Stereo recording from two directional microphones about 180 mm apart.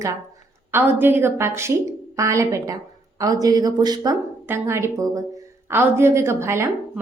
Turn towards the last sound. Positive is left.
turn(degrees=-15)  # may be behind; listen again after turning